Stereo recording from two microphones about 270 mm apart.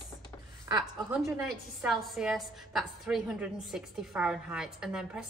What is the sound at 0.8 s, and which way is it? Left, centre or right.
A woman's voice, centre.